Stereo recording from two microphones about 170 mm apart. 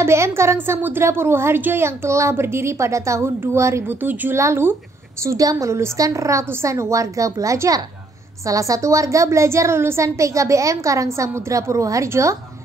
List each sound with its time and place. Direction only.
0.0 s a woman's voice: 15° right (ahead or behind)